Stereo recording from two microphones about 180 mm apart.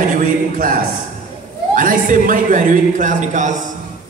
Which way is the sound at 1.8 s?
45° right (ahead or behind).